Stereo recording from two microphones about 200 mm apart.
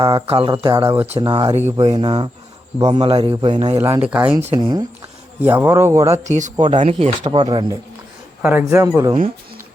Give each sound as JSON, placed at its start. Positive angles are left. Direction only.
{"t": 0.0, "sound": "a man's voice", "side_deg": -30}
{"t": 3.8, "sound": "a man's voice", "side_deg": -15}
{"t": 5.4, "sound": "a man's voice", "side_deg": -10}
{"t": 6.2, "sound": "speech", "side_deg": -35}
{"t": 7.4, "sound": "a man's voice", "side_deg": -20}